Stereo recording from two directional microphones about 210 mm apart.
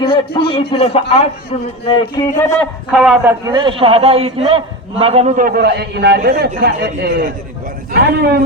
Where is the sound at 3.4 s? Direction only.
20° right (ahead or behind); by 6.8 s 55° right (ahead or behind).